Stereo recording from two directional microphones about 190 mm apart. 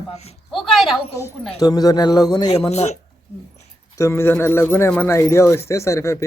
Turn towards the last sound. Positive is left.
turn(degrees=15)  # may be behind; listen again after turning